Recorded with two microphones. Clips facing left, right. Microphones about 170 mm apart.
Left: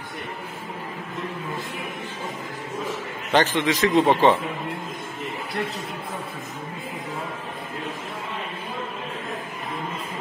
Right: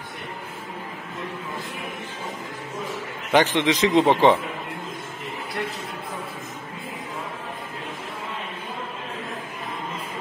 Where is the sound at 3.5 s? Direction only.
20° right (ahead or behind).